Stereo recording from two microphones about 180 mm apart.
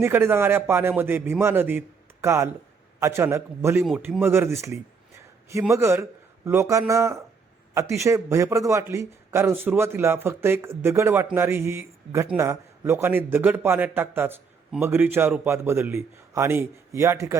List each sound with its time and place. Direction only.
0.0 s a man's voice: 15° right (ahead or behind)
3.8 s a man's voice: 5° right (ahead or behind)